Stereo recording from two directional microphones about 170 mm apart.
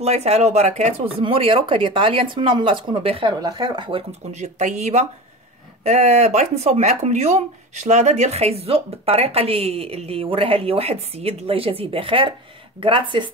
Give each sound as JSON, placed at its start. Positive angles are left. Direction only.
{"t": 0.0, "sound": "speech", "side_deg": -40}